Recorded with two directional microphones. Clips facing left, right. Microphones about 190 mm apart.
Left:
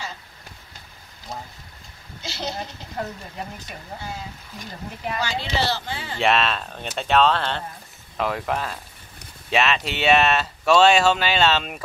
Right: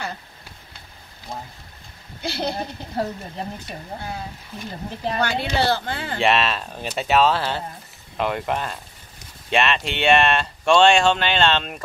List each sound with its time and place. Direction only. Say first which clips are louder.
2.2 s speech: right 5 dB; 60° right (ahead or behind)
3.0 s speech: right 4 dB; 30° right (ahead or behind)
5.2 s speech: right 4 dB; 55° right (ahead or behind)
6.1 s speech: right 1 dB; centre (ahead or behind)